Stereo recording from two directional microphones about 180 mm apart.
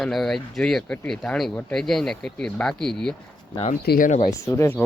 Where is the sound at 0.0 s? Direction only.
Centre (ahead or behind).